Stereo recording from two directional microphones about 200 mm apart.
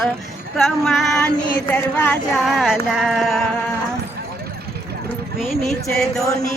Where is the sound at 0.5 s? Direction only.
Centre (ahead or behind).